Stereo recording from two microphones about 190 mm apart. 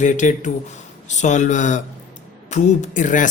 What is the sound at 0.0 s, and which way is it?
Speech, 40° left (ahead or behind).